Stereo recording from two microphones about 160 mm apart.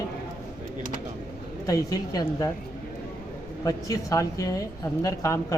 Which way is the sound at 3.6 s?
20° left (ahead or behind).